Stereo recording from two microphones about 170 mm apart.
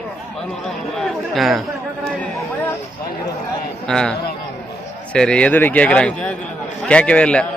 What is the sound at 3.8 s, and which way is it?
A man's voice, 5° left (ahead or behind).